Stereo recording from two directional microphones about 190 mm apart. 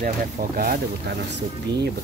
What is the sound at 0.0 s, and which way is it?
Speech, 50° right (ahead or behind).